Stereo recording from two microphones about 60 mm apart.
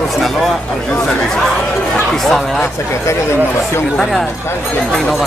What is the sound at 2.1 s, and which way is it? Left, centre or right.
Speech, centre.